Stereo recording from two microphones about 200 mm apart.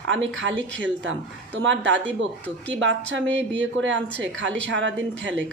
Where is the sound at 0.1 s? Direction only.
70° right (ahead or behind).